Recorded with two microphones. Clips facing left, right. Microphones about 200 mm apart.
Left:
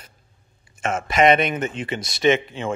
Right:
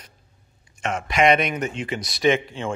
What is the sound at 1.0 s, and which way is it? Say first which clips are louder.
Speech: left 2 dB; centre (ahead or behind).